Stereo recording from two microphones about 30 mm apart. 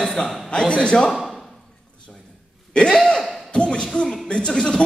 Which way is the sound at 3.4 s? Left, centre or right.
Left.